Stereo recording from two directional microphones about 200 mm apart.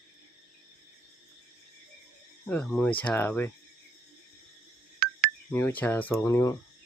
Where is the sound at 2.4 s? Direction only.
5° left (ahead or behind).